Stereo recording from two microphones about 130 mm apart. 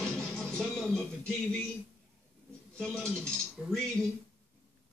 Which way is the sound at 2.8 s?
5° left (ahead or behind).